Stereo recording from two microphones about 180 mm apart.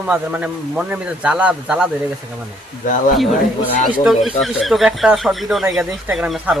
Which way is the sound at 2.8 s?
45° left (ahead or behind).